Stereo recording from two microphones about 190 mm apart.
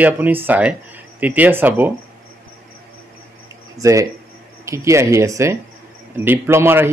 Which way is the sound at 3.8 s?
15° right (ahead or behind).